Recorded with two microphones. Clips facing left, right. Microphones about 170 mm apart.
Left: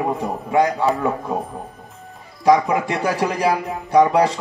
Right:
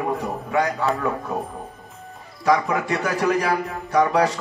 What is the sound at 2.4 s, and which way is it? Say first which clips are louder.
A man's voice: left 4 dB; 15° left (ahead or behind).